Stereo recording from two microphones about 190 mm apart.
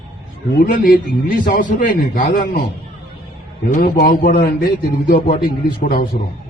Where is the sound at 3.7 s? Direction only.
50° left (ahead or behind).